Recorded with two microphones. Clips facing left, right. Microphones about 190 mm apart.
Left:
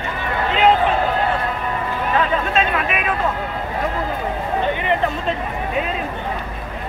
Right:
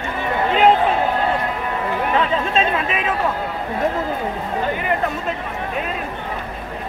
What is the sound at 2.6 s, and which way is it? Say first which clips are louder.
Chatter: even; 30° right (ahead or behind).